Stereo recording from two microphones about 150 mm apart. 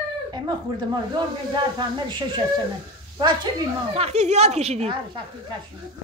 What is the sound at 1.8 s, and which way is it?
Speech, 30° right (ahead or behind).